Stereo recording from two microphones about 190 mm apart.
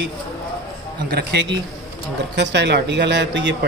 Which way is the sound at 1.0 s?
55° right (ahead or behind).